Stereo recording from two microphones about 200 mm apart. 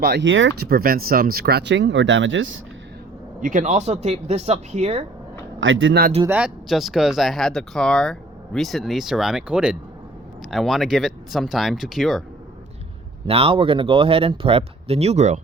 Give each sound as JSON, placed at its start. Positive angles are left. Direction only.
{"t": 0.0, "sound": "speech", "side_deg": -55}
{"t": 3.4, "sound": "speech", "side_deg": -40}
{"t": 5.5, "sound": "speech", "side_deg": -75}
{"t": 6.2, "sound": "speech", "side_deg": -5}
{"t": 13.2, "sound": "speech", "side_deg": -30}